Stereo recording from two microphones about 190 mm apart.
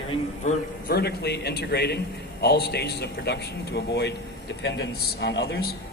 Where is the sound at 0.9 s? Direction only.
55° left (ahead or behind).